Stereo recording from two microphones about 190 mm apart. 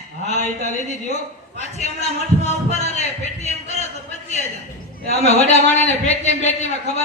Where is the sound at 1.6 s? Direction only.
35° left (ahead or behind).